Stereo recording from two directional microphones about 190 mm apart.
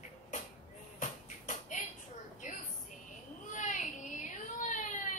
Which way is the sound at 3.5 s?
40° left (ahead or behind).